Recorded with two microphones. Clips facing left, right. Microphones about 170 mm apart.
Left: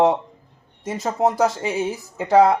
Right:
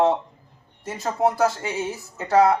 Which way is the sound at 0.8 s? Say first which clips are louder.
Left 2 dB; 20° left (ahead or behind).